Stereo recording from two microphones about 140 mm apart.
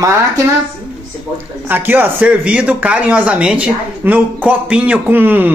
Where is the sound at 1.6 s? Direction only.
15° right (ahead or behind).